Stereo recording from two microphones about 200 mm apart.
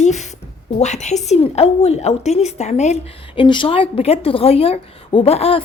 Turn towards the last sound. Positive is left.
turn(degrees=30)  # may be behind; listen again after turning